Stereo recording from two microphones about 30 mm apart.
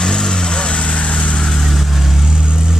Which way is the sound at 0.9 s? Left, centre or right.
Left.